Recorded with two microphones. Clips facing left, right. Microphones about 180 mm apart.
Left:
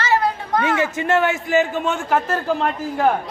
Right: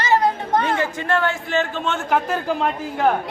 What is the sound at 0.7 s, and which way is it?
Speech, 20° left (ahead or behind).